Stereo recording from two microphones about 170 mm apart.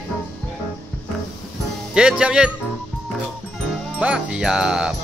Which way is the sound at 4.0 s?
5° right (ahead or behind).